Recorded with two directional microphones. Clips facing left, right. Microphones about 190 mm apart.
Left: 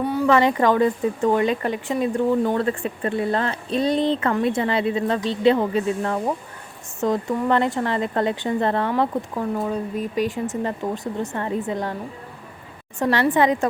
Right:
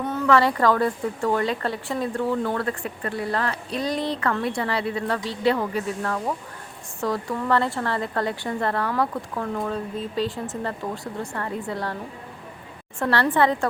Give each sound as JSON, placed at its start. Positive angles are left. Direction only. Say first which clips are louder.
{"t": 0.0, "sound": "speech", "louder": "left 2 dB", "side_deg": 10}
{"t": 13.0, "sound": "a woman's voice", "louder": "left 2 dB", "side_deg": 15}